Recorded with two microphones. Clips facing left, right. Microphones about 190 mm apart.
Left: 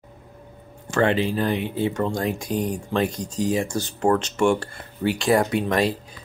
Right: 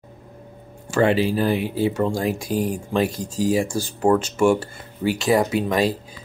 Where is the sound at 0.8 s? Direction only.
10° right (ahead or behind).